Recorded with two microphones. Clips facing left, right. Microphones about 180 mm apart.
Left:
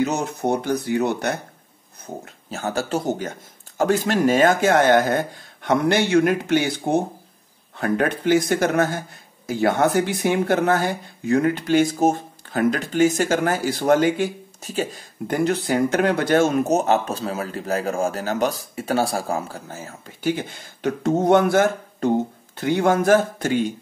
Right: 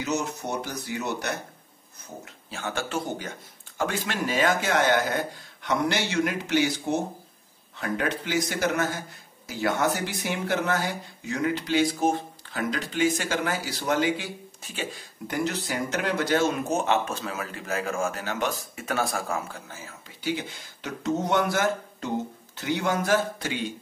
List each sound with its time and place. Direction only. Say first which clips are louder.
0.0 s speech: left 7 dB; 55° left (ahead or behind)
2.2 s speech: left 6 dB; 40° left (ahead or behind)
15.3 s speech: left 8 dB; 55° left (ahead or behind)